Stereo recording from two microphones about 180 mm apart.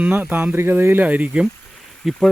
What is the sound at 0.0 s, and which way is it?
Speech, 10° right (ahead or behind).